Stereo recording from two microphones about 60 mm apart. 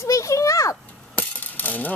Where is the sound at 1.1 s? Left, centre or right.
Left.